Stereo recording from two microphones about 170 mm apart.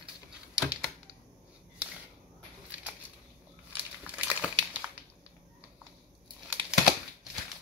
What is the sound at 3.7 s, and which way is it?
Crumpling, 10° right (ahead or behind).